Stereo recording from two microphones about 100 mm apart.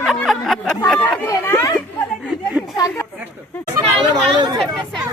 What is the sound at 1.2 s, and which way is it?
Speech, 25° left (ahead or behind).